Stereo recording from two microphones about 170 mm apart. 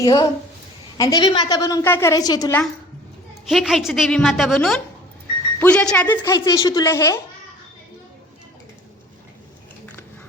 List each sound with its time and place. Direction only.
0.0 s a woman's voice: 20° left (ahead or behind)
3.5 s a woman's voice: centre (ahead or behind); by 7.2 s 20° left (ahead or behind)